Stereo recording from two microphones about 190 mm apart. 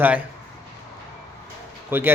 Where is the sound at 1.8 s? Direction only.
10° right (ahead or behind).